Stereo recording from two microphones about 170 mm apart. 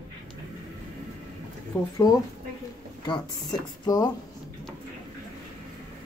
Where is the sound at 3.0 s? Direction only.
25° left (ahead or behind).